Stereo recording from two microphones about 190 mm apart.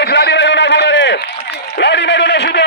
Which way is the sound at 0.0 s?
60° left (ahead or behind).